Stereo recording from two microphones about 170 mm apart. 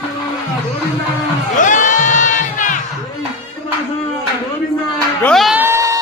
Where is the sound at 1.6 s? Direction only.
50° left (ahead or behind).